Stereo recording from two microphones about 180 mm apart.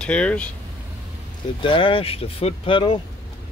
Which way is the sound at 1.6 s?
30° left (ahead or behind).